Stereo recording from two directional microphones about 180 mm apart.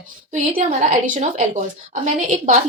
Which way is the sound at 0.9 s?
45° right (ahead or behind).